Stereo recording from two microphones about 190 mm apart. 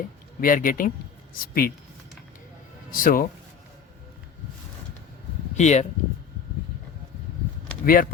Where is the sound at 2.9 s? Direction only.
50° left (ahead or behind).